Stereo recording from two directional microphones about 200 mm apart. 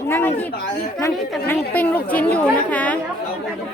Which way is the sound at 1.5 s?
10° left (ahead or behind).